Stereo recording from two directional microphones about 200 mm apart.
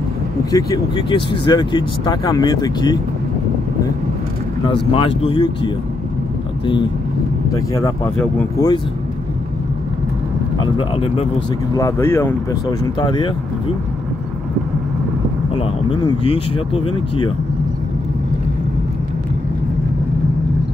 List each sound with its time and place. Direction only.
0.5 s speech: 20° left (ahead or behind)
4.9 s speech: 25° left (ahead or behind)
6.6 s speech: 25° left (ahead or behind)
10.6 s speech: 25° left (ahead or behind)
11.7 s speech: 15° left (ahead or behind)
15.5 s speech: 25° left (ahead or behind)